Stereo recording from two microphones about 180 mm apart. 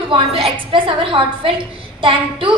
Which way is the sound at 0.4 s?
30° right (ahead or behind).